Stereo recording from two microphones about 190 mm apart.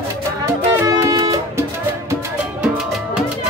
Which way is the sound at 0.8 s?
15° right (ahead or behind).